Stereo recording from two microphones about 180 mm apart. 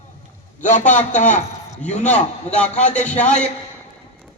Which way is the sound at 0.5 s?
45° left (ahead or behind).